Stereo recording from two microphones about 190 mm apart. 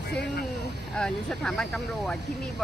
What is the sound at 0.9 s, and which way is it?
Speech, 5° left (ahead or behind).